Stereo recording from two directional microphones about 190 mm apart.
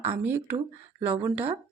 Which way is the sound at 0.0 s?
10° right (ahead or behind).